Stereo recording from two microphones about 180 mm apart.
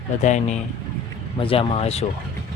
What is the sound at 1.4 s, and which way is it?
Speech, 30° left (ahead or behind).